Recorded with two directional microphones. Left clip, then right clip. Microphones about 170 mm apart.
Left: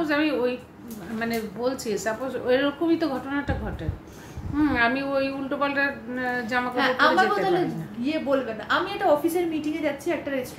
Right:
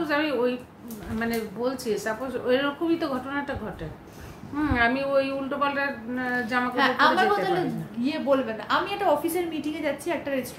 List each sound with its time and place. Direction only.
0.0 s a woman's voice: 10° left (ahead or behind)
4.6 s a woman's voice: 10° left (ahead or behind)
6.7 s a woman's voice: 25° right (ahead or behind)